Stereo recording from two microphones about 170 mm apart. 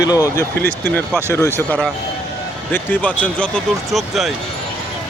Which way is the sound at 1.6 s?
5° left (ahead or behind).